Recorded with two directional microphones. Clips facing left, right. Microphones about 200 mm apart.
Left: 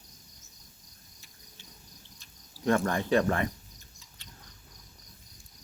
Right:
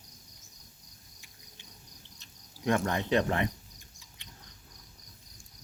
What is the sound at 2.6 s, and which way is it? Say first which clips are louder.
Cricket: left 2 dB; 20° right (ahead or behind).